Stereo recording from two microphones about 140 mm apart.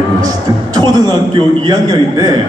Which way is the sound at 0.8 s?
30° right (ahead or behind).